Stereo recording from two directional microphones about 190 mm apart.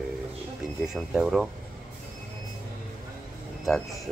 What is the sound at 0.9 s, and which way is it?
Speech, centre (ahead or behind).